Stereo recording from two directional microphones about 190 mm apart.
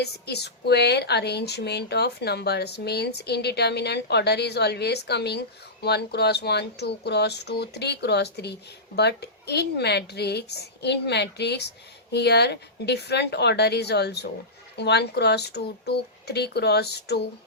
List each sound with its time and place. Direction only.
0.0 s speech: 60° left (ahead or behind)